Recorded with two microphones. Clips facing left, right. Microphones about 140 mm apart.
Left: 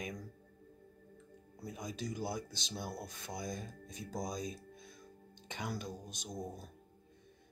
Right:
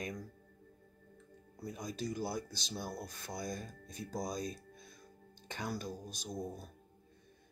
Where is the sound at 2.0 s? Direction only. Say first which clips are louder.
Right 2 dB; 20° left (ahead or behind).